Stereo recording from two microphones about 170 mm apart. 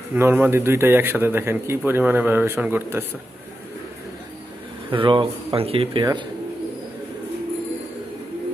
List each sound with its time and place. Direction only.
0.1 s a man's voice: 10° right (ahead or behind)
4.9 s speech: 30° right (ahead or behind)